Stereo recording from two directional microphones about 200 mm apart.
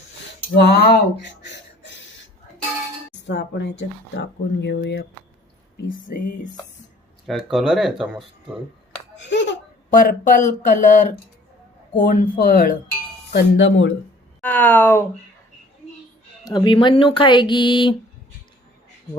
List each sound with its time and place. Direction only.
0.5 s speech: 55° left (ahead or behind)
3.2 s speech: 60° left (ahead or behind)
7.3 s speech: centre (ahead or behind)
9.1 s a sound: 65° left (ahead or behind)
9.9 s speech: 40° left (ahead or behind)
13.3 s speech: 65° left (ahead or behind)
14.4 s speech: 10° left (ahead or behind)
16.4 s speech: 20° left (ahead or behind)